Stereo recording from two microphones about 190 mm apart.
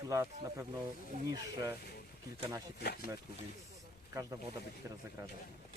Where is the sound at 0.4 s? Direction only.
15° right (ahead or behind).